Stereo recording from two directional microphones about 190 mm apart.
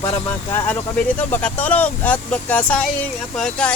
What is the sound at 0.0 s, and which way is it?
Speech, 15° left (ahead or behind).